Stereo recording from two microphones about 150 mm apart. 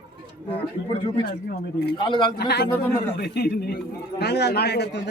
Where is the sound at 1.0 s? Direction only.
35° left (ahead or behind).